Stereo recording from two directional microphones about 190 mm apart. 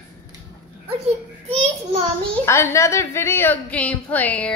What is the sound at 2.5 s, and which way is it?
A woman's voice, 15° left (ahead or behind).